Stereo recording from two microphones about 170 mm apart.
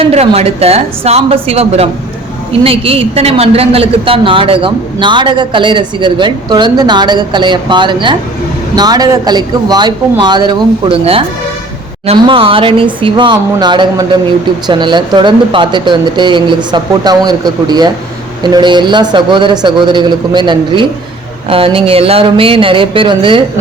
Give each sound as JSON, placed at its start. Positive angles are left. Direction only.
{"t": 0.0, "sound": "speech", "side_deg": -35}